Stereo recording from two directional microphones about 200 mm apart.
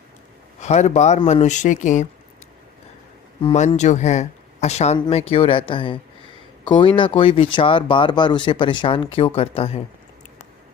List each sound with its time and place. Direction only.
0.6 s speech: 35° left (ahead or behind)
3.4 s speech: 30° left (ahead or behind)